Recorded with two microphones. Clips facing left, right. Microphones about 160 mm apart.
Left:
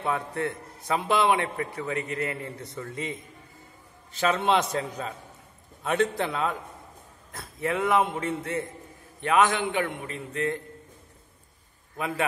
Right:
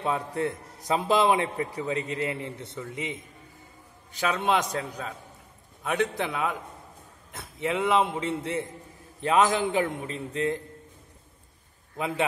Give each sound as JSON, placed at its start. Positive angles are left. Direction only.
{"t": 0.0, "sound": "a man's voice", "side_deg": -20}
{"t": 0.8, "sound": "a man's voice", "side_deg": -30}
{"t": 4.2, "sound": "a man's voice", "side_deg": -10}
{"t": 4.7, "sound": "a man's voice", "side_deg": 0}
{"t": 7.6, "sound": "a man's voice", "side_deg": -20}